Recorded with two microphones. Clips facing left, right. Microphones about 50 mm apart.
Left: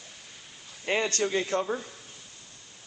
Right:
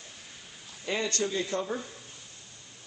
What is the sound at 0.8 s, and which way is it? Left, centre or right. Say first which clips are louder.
Speech: left 3 dB; left.